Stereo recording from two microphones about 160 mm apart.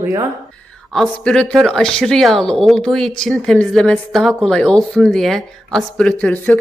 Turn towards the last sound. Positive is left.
turn(degrees=5)  # may be behind; listen again after turning